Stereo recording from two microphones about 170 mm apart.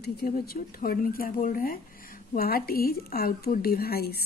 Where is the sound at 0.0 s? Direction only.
65° left (ahead or behind).